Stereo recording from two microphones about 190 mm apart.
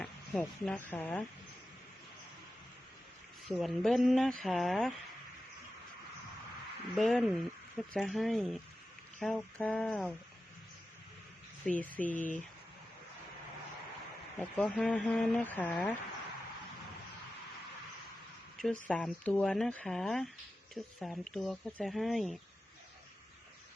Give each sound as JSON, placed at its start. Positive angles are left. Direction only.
{"t": 0.0, "sound": "speech", "side_deg": 5}
{"t": 3.5, "sound": "speech", "side_deg": 0}
{"t": 6.9, "sound": "speech", "side_deg": 0}
{"t": 11.6, "sound": "speech", "side_deg": 10}
{"t": 12.1, "sound": "speech", "side_deg": 40}
{"t": 14.3, "sound": "speech", "side_deg": 5}
{"t": 18.5, "sound": "speech", "side_deg": 0}